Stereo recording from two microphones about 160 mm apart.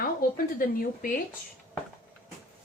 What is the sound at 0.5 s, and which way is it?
Speech, 60° left (ahead or behind).